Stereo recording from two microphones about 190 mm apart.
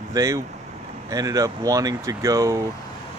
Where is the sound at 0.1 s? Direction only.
15° right (ahead or behind).